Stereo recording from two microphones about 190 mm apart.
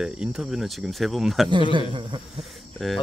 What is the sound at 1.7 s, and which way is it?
Speech, 25° right (ahead or behind).